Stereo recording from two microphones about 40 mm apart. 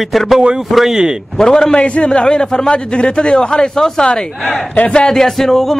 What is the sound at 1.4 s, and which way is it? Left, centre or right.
A man's voice, centre.